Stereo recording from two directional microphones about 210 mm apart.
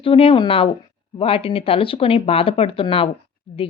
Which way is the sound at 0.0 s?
25° left (ahead or behind).